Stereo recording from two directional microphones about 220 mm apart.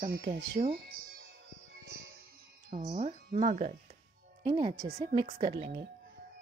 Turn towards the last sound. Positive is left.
turn(degrees=-20)  # may be behind; listen again after turning